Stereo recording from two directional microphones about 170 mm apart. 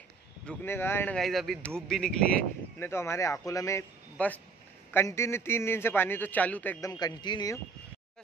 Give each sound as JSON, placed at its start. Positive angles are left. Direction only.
{"t": 0.5, "sound": "a man's voice", "side_deg": 15}
{"t": 2.8, "sound": "a man's voice", "side_deg": 15}
{"t": 6.9, "sound": "speech", "side_deg": 25}